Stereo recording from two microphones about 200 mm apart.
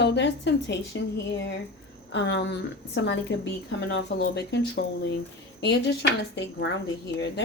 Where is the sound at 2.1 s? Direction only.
60° left (ahead or behind).